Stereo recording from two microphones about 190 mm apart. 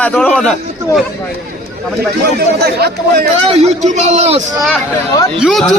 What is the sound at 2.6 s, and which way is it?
Speech, 55° right (ahead or behind).